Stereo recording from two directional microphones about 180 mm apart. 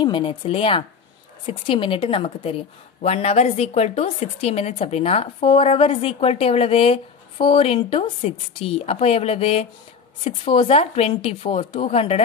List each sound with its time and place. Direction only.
0.0 s a woman's voice: 30° left (ahead or behind)